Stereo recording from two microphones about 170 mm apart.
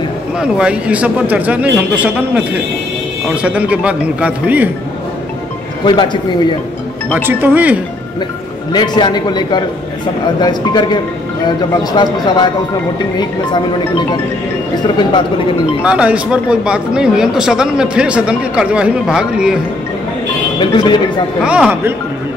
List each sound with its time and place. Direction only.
0.4 s speech: 5° right (ahead or behind)
3.4 s speech: 5° right (ahead or behind)
5.9 s speech: 25° left (ahead or behind)
7.2 s speech: 10° right (ahead or behind)
8.7 s speech: 25° left (ahead or behind)
15.8 s speech: 5° right (ahead or behind)
20.5 s speech: 30° left (ahead or behind)
21.5 s speech: 10° right (ahead or behind)